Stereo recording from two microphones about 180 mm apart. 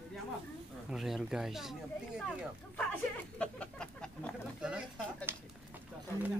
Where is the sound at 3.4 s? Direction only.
5° left (ahead or behind).